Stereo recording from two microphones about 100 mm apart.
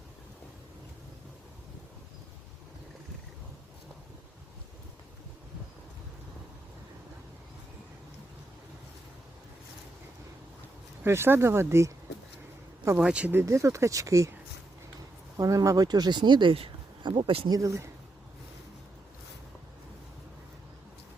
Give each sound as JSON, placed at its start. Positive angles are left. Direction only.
{"t": 11.0, "sound": "speech", "side_deg": -25}
{"t": 13.0, "sound": "speech", "side_deg": -10}
{"t": 13.4, "sound": "speech", "side_deg": -30}
{"t": 15.4, "sound": "speech", "side_deg": -30}
{"t": 17.5, "sound": "speech", "side_deg": -30}